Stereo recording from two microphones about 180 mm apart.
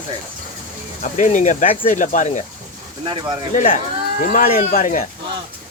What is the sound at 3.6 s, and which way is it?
Speech, 45° left (ahead or behind).